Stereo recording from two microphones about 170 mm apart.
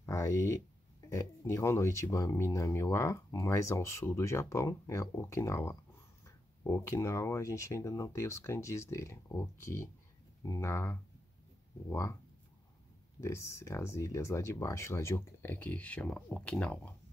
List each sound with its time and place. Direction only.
0.0 s a sound: 15° left (ahead or behind)
1.1 s speech: 15° left (ahead or behind)
13.2 s speech: 15° left (ahead or behind)